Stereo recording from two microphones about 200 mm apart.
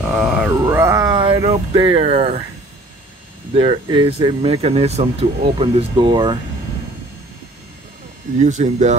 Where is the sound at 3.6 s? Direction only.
25° right (ahead or behind).